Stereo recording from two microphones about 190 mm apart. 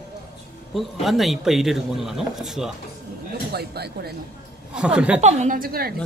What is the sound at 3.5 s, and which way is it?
Speech, 55° right (ahead or behind).